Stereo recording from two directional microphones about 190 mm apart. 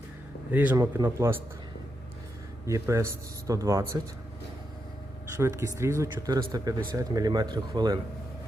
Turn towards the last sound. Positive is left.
turn(degrees=-20)  # may be behind; listen again after turning